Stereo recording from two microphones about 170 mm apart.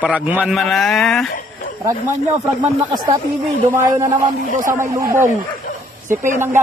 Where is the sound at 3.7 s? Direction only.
15° right (ahead or behind).